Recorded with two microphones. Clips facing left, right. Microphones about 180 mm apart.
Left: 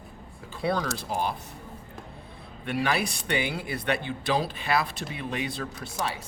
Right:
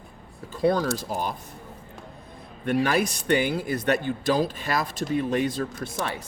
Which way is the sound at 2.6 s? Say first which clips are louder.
Right 5 dB; 45° right (ahead or behind).